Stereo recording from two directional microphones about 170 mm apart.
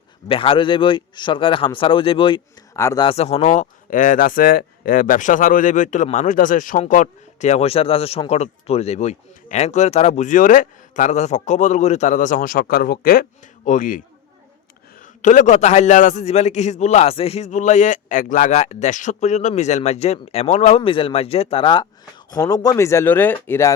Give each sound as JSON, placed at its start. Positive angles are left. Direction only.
{"t": 0.3, "sound": "a man's voice", "side_deg": 30}
{"t": 3.1, "sound": "speech", "side_deg": 40}
{"t": 15.0, "sound": "a man's voice", "side_deg": 45}